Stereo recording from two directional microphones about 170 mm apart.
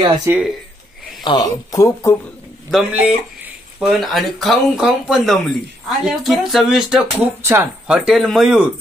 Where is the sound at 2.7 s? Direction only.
5° right (ahead or behind).